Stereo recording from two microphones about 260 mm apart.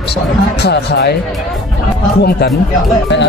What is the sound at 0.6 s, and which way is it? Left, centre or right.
Speech, left.